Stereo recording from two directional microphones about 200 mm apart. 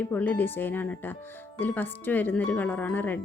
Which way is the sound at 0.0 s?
10° left (ahead or behind).